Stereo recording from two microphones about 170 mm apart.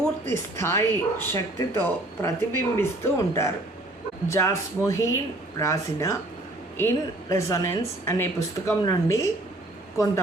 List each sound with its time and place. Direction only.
0.3 s speech: 15° left (ahead or behind)